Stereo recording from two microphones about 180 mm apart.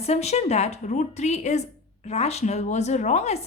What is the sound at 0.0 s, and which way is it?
A woman's voice, 35° left (ahead or behind).